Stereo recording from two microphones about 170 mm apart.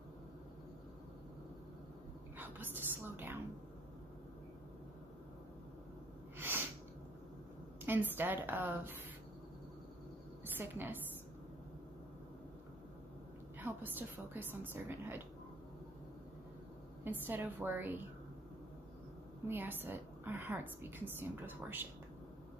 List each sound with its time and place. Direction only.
2.3 s a woman's voice: 10° right (ahead or behind)
6.3 s sneeze: 15° right (ahead or behind)
7.8 s a woman's voice: 10° right (ahead or behind)
10.4 s a woman's voice: 10° right (ahead or behind)
13.6 s a woman's voice: 10° right (ahead or behind)
17.0 s a woman's voice: 10° right (ahead or behind)
19.4 s a woman's voice: 10° right (ahead or behind)